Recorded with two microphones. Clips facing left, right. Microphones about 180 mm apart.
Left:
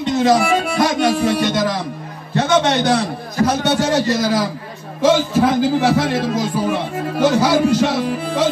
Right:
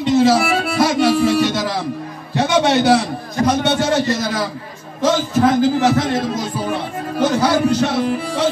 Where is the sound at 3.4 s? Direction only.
10° left (ahead or behind).